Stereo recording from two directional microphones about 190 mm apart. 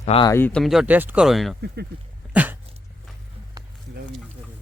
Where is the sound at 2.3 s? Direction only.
10° right (ahead or behind).